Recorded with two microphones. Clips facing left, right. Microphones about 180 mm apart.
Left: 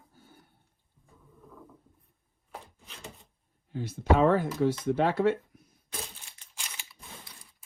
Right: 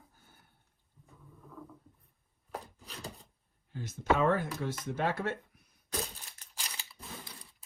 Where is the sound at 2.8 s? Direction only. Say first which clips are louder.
Right 2 dB; 35° right (ahead or behind).